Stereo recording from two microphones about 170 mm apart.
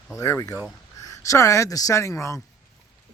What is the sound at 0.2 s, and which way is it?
Speech, 20° left (ahead or behind).